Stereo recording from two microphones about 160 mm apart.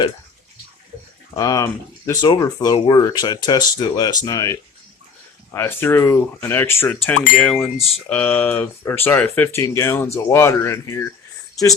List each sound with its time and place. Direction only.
1.3 s speech: 25° left (ahead or behind)